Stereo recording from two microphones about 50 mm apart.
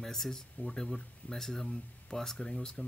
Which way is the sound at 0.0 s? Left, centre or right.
Centre.